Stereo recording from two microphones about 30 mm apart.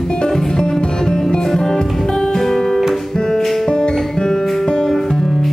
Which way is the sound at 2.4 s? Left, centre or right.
Centre.